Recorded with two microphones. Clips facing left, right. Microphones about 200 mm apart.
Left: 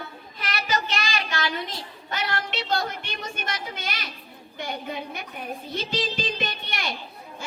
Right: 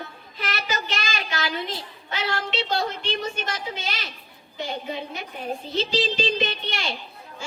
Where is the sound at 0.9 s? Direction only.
45° right (ahead or behind).